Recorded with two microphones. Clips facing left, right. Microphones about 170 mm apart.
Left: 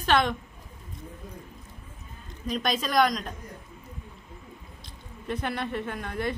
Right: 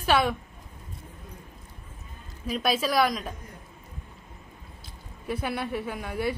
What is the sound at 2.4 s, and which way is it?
Speech, 5° right (ahead or behind).